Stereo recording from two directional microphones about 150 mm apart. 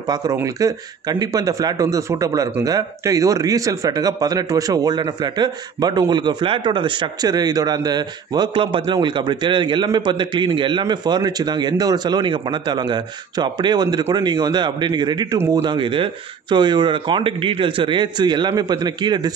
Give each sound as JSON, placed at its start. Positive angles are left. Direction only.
{"t": 0.1, "sound": "a man's voice", "side_deg": -25}